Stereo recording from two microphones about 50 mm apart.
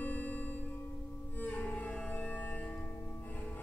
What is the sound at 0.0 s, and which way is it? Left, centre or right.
Music, left.